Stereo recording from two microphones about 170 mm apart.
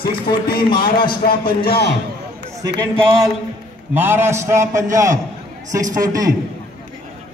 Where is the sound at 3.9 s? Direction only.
10° right (ahead or behind).